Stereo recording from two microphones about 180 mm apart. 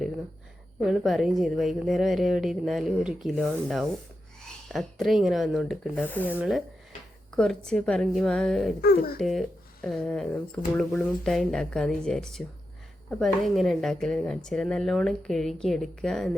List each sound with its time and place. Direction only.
0.8 s speech: centre (ahead or behind)
6.1 s speech: 10° left (ahead or behind)
6.3 s speech: 5° right (ahead or behind)
8.8 s speech: 60° left (ahead or behind)
9.1 s speech: centre (ahead or behind)